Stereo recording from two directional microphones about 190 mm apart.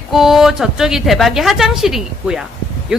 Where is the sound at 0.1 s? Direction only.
Centre (ahead or behind).